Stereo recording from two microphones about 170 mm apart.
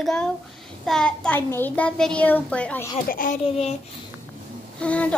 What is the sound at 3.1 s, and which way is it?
Speech, 55° left (ahead or behind).